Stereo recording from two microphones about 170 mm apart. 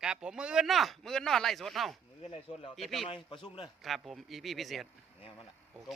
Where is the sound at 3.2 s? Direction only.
30° left (ahead or behind).